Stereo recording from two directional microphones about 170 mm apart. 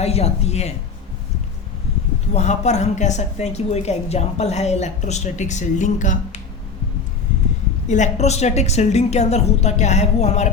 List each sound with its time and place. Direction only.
0.0 s a woman's voice: 40° left (ahead or behind)
2.3 s a woman's voice: 40° left (ahead or behind)
7.9 s a woman's voice: 45° left (ahead or behind)